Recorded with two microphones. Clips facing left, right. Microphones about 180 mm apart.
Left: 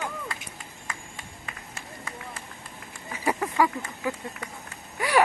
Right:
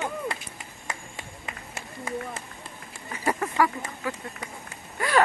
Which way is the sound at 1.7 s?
20° right (ahead or behind).